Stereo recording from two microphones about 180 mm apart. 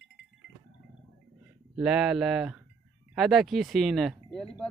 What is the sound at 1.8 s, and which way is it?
Speech, 5° right (ahead or behind).